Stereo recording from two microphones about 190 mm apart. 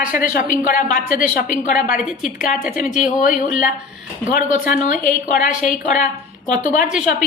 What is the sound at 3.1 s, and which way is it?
A woman's voice, 40° left (ahead or behind).